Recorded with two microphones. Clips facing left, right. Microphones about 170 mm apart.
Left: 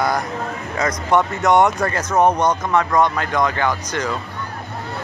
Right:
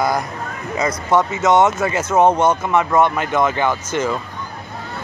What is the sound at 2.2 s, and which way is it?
Speech, 25° right (ahead or behind).